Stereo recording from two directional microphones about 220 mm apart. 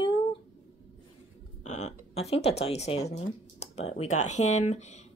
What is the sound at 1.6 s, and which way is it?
Speech, 30° left (ahead or behind).